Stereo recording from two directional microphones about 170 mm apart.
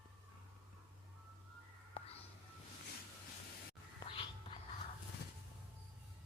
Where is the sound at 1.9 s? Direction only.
35° left (ahead or behind).